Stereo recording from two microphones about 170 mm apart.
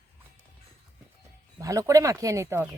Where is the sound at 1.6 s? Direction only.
20° right (ahead or behind).